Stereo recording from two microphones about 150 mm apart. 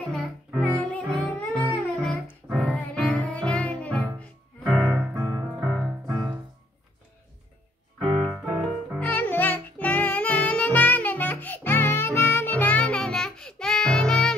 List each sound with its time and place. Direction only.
0.6 s music: 10° left (ahead or behind)
4.9 s music: 15° right (ahead or behind)
5.6 s music: centre (ahead or behind)
8.0 s music: 30° right (ahead or behind)
8.4 s keyboard: 5° right (ahead or behind)
9.0 s music: 10° left (ahead or behind)